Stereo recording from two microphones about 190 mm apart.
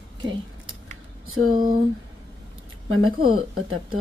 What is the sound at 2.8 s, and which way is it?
Speech, 90° right.